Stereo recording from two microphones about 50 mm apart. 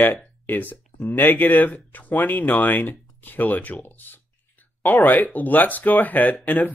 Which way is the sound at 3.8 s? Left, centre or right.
Left.